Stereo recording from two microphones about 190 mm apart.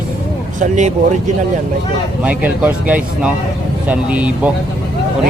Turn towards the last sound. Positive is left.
turn(degrees=-5)  # may be behind; listen again after turning